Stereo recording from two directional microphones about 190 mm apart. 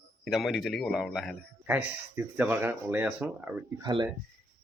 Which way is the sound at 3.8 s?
25° right (ahead or behind).